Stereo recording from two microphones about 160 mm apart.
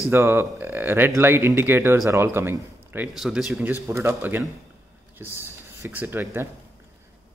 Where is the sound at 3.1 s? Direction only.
5° right (ahead or behind).